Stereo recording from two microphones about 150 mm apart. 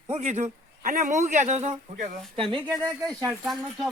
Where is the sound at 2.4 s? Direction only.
35° right (ahead or behind).